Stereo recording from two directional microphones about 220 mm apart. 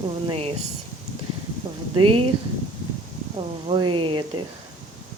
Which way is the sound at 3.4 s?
20° right (ahead or behind).